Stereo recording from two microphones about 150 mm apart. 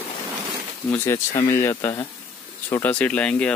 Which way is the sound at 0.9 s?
15° left (ahead or behind).